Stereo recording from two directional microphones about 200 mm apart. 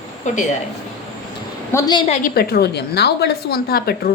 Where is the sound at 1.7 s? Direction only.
20° left (ahead or behind).